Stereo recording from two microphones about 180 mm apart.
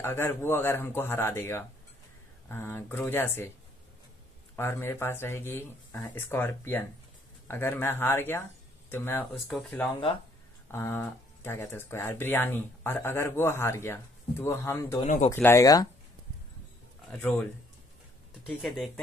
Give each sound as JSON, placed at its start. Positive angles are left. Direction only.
{"t": 0.0, "sound": "speech", "side_deg": 15}
{"t": 4.6, "sound": "speech", "side_deg": 15}
{"t": 9.4, "sound": "speech", "side_deg": 0}
{"t": 15.0, "sound": "speech", "side_deg": 40}
{"t": 15.3, "sound": "speech", "side_deg": 15}
{"t": 17.1, "sound": "speech", "side_deg": 5}
{"t": 18.5, "sound": "speech", "side_deg": 0}